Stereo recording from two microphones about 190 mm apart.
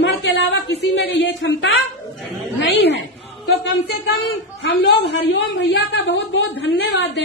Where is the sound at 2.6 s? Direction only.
60° left (ahead or behind).